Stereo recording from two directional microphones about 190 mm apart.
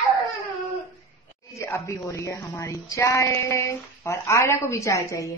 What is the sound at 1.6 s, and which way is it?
A woman's voice, 15° left (ahead or behind).